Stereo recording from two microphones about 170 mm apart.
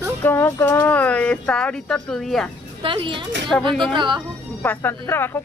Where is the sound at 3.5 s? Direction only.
5° left (ahead or behind).